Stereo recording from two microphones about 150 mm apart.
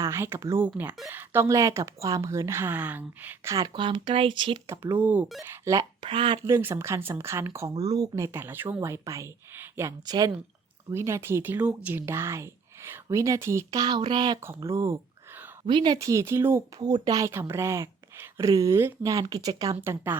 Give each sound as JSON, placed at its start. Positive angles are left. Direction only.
{"t": 0.0, "sound": "speech", "side_deg": -15}
{"t": 3.5, "sound": "speech", "side_deg": -25}
{"t": 4.6, "sound": "speech", "side_deg": -20}
{"t": 6.0, "sound": "speech", "side_deg": -35}
{"t": 6.4, "sound": "speech", "side_deg": -15}
{"t": 14.4, "sound": "speech", "side_deg": -20}
{"t": 15.6, "sound": "speech", "side_deg": -30}
{"t": 16.0, "sound": "speech", "side_deg": -20}